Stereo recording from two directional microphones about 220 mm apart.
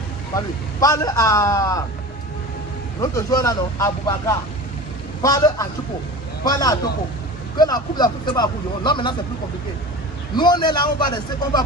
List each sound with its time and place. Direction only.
0.7 s speech: 15° left (ahead or behind)
3.0 s speech: 15° left (ahead or behind)
10.3 s speech: 20° left (ahead or behind)